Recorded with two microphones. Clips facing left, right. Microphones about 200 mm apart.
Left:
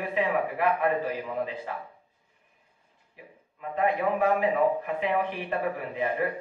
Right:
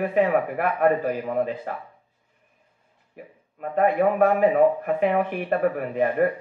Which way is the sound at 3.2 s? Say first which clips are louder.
Right 7 dB; 50° right (ahead or behind).